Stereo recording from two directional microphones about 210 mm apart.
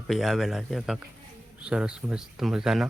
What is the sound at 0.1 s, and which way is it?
Speech, centre (ahead or behind).